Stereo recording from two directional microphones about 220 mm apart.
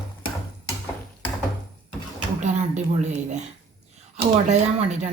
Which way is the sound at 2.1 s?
35° right (ahead or behind).